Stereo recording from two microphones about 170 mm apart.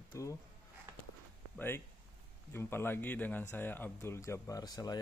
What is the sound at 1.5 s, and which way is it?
Speech, 10° left (ahead or behind).